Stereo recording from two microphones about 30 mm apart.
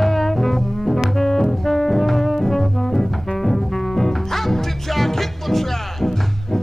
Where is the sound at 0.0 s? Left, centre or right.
Centre.